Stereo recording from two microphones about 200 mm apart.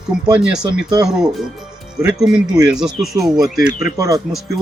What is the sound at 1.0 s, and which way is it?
Speech, 5° right (ahead or behind).